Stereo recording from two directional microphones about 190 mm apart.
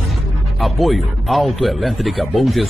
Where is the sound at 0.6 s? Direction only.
Centre (ahead or behind).